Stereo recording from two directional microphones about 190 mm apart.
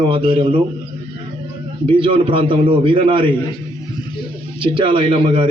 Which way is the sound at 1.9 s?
30° right (ahead or behind).